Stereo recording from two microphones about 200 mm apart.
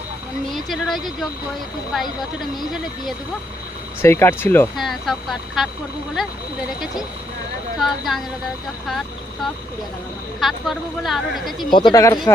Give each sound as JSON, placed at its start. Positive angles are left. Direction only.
{"t": 0.5, "sound": "speech", "side_deg": 0}
{"t": 4.0, "sound": "speech", "side_deg": 10}
{"t": 4.8, "sound": "speech", "side_deg": 0}
{"t": 7.8, "sound": "speech", "side_deg": 0}
{"t": 11.7, "sound": "speech", "side_deg": 20}